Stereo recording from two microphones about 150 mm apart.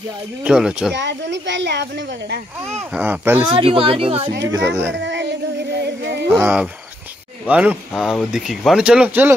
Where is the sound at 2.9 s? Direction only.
10° right (ahead or behind).